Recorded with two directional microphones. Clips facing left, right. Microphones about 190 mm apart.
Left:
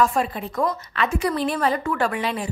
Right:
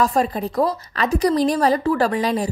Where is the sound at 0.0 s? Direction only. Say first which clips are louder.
Right 2 dB; 40° right (ahead or behind).